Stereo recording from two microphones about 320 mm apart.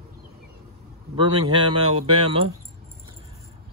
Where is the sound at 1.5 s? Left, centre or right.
Centre.